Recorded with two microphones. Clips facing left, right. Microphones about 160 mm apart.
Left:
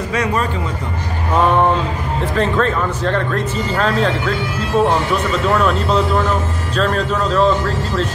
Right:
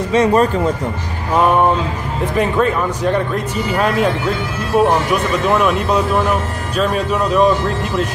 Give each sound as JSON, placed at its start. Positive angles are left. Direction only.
{"t": 0.1, "sound": "speech", "side_deg": -25}
{"t": 2.3, "sound": "speech", "side_deg": -10}